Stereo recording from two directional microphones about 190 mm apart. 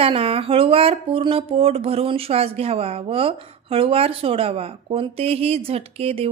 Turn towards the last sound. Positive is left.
turn(degrees=-30)  # may be behind; listen again after turning